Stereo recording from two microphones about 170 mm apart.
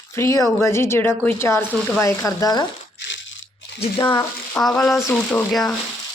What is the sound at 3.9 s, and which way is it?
Speech, 25° left (ahead or behind).